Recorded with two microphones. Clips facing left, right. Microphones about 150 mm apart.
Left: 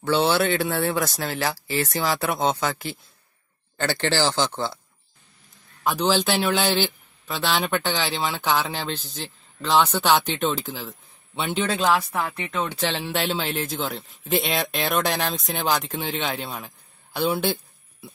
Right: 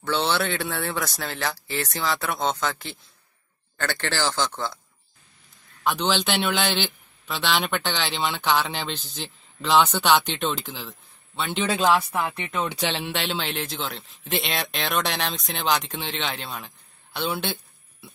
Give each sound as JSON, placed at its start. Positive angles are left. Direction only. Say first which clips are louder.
{"t": 0.0, "sound": "a man's voice", "louder": "left 4 dB", "side_deg": 5}
{"t": 4.0, "sound": "speech", "louder": "left 4 dB", "side_deg": 25}
{"t": 4.5, "sound": "speech", "louder": "left 2 dB", "side_deg": 5}
{"t": 5.9, "sound": "a man's voice", "louder": "left 2 dB", "side_deg": 5}